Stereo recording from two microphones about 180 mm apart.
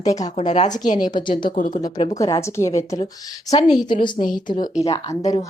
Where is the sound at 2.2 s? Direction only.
15° left (ahead or behind).